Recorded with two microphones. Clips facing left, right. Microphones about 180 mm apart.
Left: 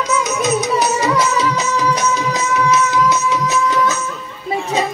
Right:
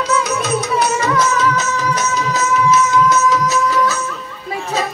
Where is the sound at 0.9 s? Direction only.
10° left (ahead or behind).